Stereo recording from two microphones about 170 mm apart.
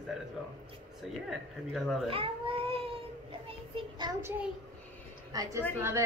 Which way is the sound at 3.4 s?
30° right (ahead or behind).